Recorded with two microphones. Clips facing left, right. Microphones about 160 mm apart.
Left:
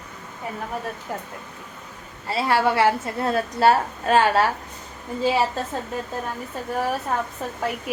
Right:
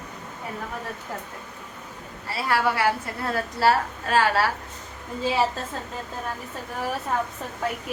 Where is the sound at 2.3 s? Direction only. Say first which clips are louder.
Left 4 dB; 25° left (ahead or behind).